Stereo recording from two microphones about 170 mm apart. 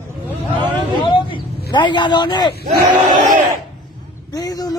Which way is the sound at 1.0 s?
30° left (ahead or behind).